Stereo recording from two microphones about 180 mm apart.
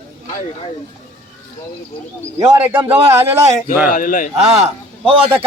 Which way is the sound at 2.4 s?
15° right (ahead or behind).